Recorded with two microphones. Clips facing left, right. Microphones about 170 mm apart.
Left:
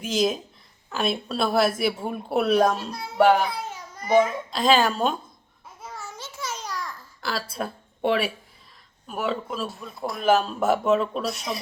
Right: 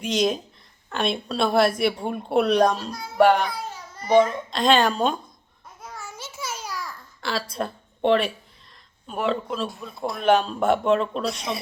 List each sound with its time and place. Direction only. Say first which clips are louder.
0.0 s a man's voice: right 1 dB; centre (ahead or behind)
3.5 s baby cry: even; 20° left (ahead or behind)
4.0 s a man's voice: right 2 dB; 5° left (ahead or behind)
5.8 s babbling: even; centre (ahead or behind)
7.5 s a man's voice: right 2 dB; 5° left (ahead or behind)